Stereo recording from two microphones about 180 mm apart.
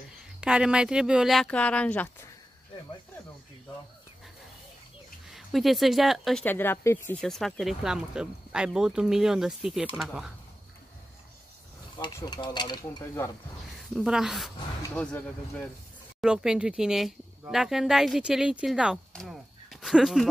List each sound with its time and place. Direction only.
0.4 s speech: 5° right (ahead or behind)
5.3 s speech: centre (ahead or behind)
7.2 s speech: centre (ahead or behind)
12.0 s speech: 25° left (ahead or behind)
13.0 s speech: 15° left (ahead or behind)
13.9 s speech: 5° right (ahead or behind)
16.2 s speech: 5° right (ahead or behind)